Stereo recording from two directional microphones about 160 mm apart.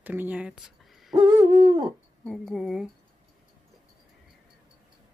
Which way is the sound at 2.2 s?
Centre (ahead or behind).